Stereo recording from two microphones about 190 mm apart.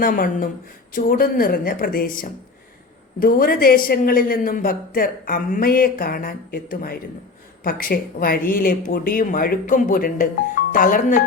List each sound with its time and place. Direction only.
0.0 s a man's voice: 45° left (ahead or behind)